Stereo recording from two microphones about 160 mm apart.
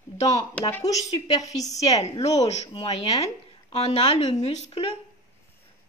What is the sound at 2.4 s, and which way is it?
A woman's voice, 40° left (ahead or behind).